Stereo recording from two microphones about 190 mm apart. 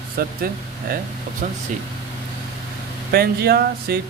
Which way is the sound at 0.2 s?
50° right (ahead or behind).